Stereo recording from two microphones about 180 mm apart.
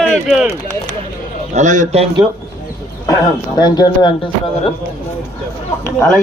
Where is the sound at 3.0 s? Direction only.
20° left (ahead or behind).